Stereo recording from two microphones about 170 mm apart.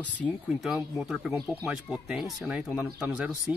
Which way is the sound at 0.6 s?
Centre (ahead or behind).